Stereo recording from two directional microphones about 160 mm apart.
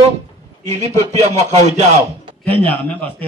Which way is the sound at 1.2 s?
45° right (ahead or behind).